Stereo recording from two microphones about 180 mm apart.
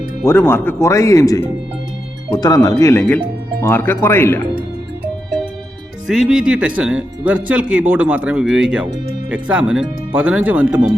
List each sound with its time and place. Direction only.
0.3 s speech: 15° left (ahead or behind)
6.1 s speech: centre (ahead or behind)